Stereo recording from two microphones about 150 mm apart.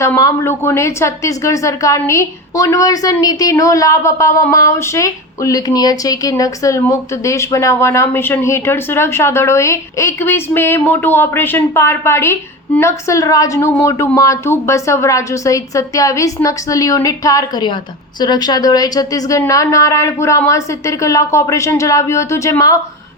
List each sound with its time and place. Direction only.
0.0 s a woman's voice: 20° left (ahead or behind)